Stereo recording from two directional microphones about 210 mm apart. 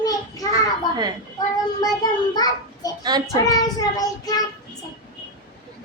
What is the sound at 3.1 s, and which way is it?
Speech, 20° right (ahead or behind).